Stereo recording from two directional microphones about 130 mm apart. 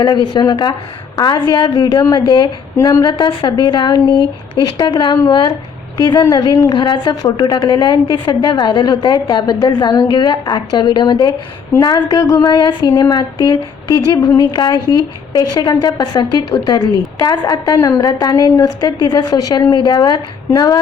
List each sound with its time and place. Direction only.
0.0 s a woman's voice: 35° left (ahead or behind)